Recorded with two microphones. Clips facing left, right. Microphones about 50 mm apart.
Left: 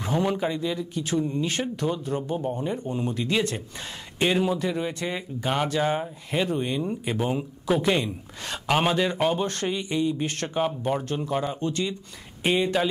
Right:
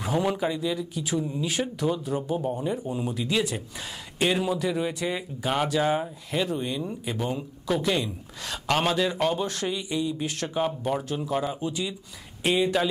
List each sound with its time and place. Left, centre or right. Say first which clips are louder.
0.0 s speech: even; centre